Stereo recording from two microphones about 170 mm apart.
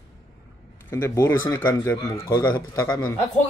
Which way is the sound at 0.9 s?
15° left (ahead or behind).